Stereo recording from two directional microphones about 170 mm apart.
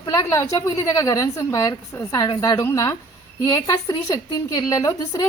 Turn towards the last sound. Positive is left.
turn(degrees=20)  # may be behind; listen again after turning